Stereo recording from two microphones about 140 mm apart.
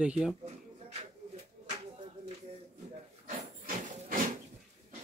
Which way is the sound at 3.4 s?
60° right (ahead or behind).